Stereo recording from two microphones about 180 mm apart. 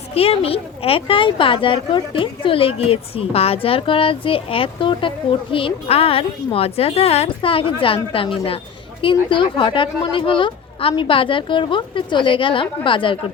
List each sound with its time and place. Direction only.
0.1 s speech: 35° left (ahead or behind)